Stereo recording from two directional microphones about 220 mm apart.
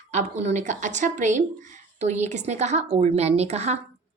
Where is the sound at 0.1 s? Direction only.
30° right (ahead or behind).